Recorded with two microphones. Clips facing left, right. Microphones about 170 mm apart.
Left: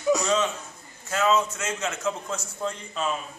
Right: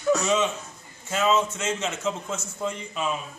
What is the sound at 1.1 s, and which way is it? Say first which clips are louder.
A man's voice: even; 20° right (ahead or behind).